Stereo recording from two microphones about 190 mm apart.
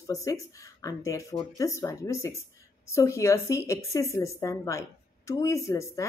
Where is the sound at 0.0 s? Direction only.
15° left (ahead or behind).